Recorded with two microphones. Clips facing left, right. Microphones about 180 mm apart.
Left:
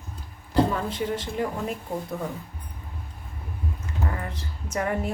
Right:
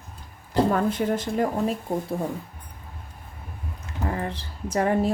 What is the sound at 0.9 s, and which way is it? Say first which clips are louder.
Speech: right 4 dB; 45° right (ahead or behind).